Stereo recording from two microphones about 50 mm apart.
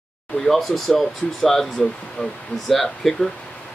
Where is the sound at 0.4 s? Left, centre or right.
Centre.